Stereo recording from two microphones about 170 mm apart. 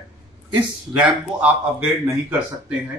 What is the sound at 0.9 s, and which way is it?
Speech, 5° right (ahead or behind).